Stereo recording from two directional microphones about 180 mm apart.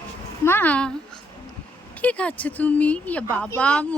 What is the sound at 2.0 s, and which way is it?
A woman's voice, 5° left (ahead or behind).